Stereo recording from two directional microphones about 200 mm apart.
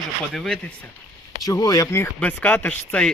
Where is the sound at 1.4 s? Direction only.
20° left (ahead or behind).